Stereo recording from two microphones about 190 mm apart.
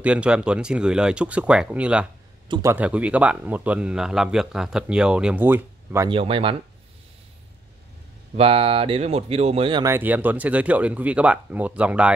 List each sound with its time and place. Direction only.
0.0 s speech: 5° right (ahead or behind)
2.4 s speech: 25° right (ahead or behind)
2.7 s speech: 5° right (ahead or behind)
6.0 s speech: 30° right (ahead or behind)
8.4 s speech: 30° right (ahead or behind)
9.8 s speech: 10° right (ahead or behind)